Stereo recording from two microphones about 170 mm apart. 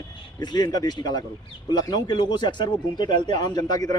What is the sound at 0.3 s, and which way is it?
A man's voice, 25° left (ahead or behind).